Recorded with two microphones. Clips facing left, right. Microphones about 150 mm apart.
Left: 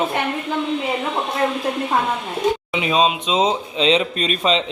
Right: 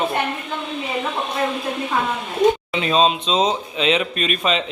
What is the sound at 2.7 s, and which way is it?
Speech, 15° left (ahead or behind).